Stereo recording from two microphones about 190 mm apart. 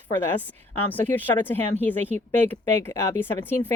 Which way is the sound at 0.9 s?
10° left (ahead or behind).